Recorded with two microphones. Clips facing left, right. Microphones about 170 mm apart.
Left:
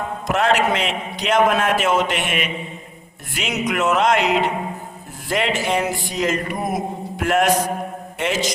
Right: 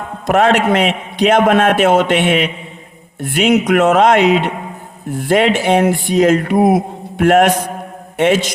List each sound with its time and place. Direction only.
0.3 s speech: 60° right (ahead or behind)